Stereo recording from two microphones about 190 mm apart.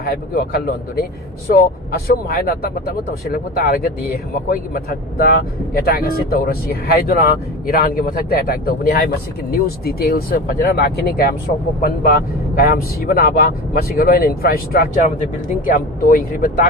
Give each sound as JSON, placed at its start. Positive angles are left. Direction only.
{"t": 0.0, "sound": "speech", "side_deg": 50}